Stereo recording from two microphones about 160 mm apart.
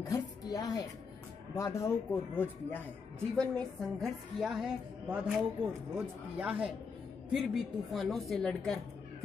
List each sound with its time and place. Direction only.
0.0 s a woman's voice: 20° left (ahead or behind); by 8.7 s 5° left (ahead or behind)